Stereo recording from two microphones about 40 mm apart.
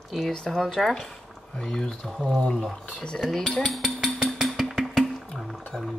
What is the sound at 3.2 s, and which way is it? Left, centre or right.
Speech, centre.